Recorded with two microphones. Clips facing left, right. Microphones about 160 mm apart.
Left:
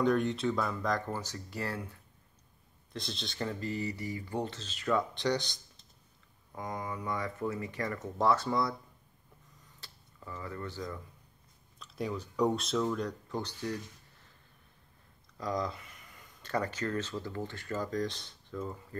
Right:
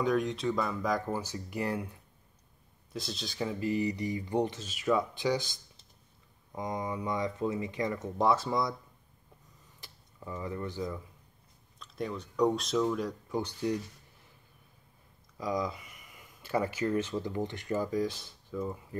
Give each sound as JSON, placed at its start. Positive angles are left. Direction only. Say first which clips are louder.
{"t": 0.0, "sound": "speech", "louder": "left 1 dB", "side_deg": 0}
{"t": 2.9, "sound": "speech", "louder": "right 2 dB", "side_deg": -5}
{"t": 6.5, "sound": "speech", "louder": "right 4 dB", "side_deg": -20}
{"t": 9.8, "sound": "tick-tock", "louder": "right 4 dB", "side_deg": -15}
{"t": 11.8, "sound": "speech", "louder": "even", "side_deg": 5}
{"t": 15.3, "sound": "speech", "louder": "right 2 dB", "side_deg": -5}